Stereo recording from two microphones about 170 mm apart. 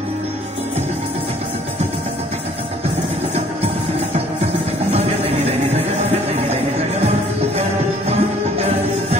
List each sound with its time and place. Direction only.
8.1 s music: 40° right (ahead or behind)